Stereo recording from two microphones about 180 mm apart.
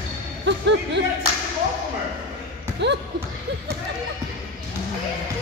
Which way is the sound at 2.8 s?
75° right (ahead or behind).